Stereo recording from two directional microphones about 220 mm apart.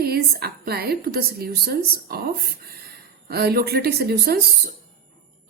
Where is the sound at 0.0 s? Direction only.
45° right (ahead or behind).